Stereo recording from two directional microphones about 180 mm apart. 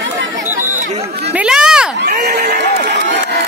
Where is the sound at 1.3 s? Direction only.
5° right (ahead or behind).